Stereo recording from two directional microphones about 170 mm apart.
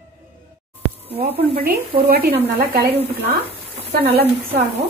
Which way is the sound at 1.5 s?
60° right (ahead or behind).